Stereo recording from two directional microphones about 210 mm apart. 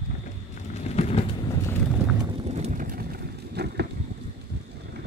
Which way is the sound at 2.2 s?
25° right (ahead or behind).